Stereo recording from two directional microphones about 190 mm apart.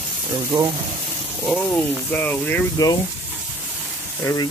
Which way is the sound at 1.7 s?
10° left (ahead or behind).